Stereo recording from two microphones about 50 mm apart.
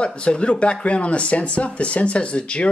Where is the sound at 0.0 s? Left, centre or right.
Left.